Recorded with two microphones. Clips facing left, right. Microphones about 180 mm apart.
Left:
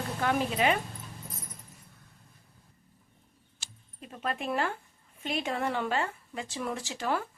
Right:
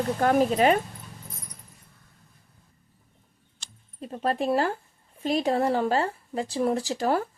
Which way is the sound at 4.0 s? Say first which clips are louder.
Right 8 dB; 35° right (ahead or behind).